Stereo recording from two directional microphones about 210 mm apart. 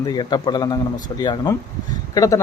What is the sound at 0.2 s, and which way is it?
A man's voice, 20° left (ahead or behind).